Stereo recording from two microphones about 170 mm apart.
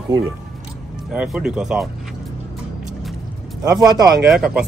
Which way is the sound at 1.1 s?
5° right (ahead or behind).